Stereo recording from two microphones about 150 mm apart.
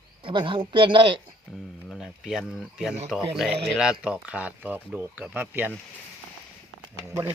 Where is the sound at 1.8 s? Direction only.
Centre (ahead or behind).